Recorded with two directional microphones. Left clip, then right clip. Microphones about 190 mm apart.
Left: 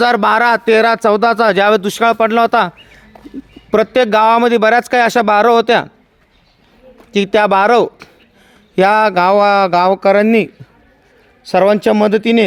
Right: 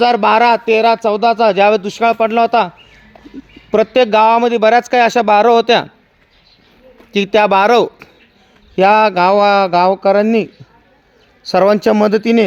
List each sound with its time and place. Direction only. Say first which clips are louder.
0.0 s speech: right 1 dB; 15° left (ahead or behind)
7.1 s speech: even; 5° left (ahead or behind)
8.7 s speech: right 1 dB; 15° left (ahead or behind)
11.4 s speech: even; 5° right (ahead or behind)